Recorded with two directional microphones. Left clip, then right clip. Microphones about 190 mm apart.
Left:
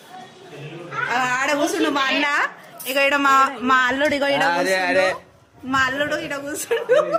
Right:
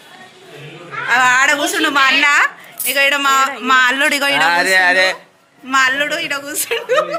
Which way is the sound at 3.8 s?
15° left (ahead or behind).